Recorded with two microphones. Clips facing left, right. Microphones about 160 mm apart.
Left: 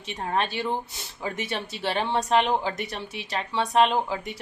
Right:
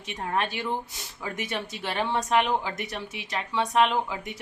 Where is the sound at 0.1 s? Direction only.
30° left (ahead or behind).